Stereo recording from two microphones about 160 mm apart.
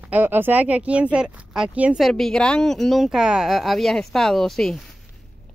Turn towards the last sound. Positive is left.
turn(degrees=0)  # may be behind; listen again after turning